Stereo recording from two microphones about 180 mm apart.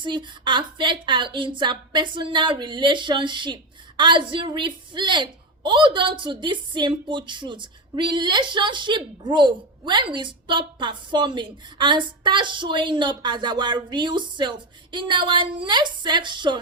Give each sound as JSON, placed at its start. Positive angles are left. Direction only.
{"t": 0.0, "sound": "a woman's voice", "side_deg": -25}